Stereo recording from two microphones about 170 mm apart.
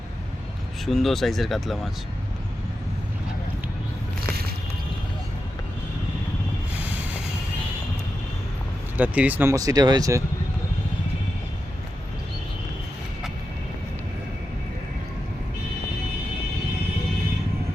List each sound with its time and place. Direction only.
0.9 s speech: centre (ahead or behind)
9.0 s speech: 10° right (ahead or behind)